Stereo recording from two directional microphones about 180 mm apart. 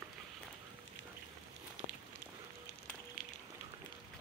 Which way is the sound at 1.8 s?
85° left.